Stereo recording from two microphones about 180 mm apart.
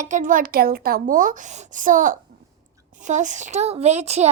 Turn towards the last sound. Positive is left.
turn(degrees=-35)  # may be behind; listen again after turning